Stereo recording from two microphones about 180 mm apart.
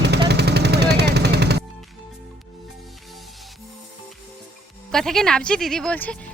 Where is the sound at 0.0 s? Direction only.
70° right (ahead or behind).